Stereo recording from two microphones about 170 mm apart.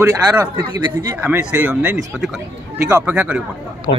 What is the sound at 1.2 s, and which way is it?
Speech, 10° right (ahead or behind).